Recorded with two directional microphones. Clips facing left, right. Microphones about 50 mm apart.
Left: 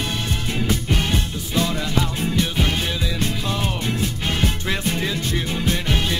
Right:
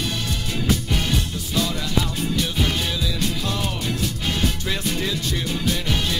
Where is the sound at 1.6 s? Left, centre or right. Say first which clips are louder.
Left 2 dB; left.